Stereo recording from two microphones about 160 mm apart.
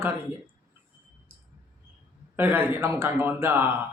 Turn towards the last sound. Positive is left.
turn(degrees=-15)  # may be behind; listen again after turning